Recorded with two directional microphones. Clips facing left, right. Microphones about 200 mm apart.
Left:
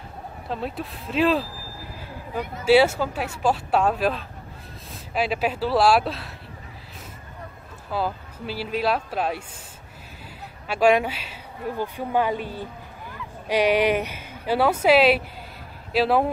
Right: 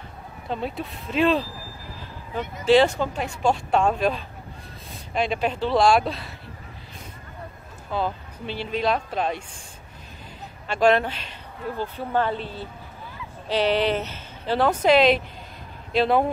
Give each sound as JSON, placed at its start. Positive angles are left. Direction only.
{"t": 0.5, "sound": "speech", "side_deg": 0}
{"t": 2.6, "sound": "speech", "side_deg": 10}
{"t": 7.9, "sound": "speech", "side_deg": 5}
{"t": 10.7, "sound": "speech", "side_deg": 10}